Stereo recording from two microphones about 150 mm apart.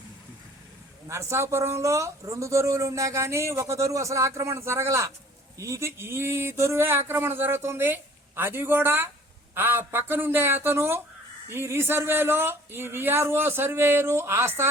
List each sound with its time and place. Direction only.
1.0 s speech: 20° right (ahead or behind)